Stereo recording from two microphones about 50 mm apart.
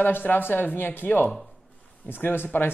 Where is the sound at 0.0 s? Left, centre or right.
Left.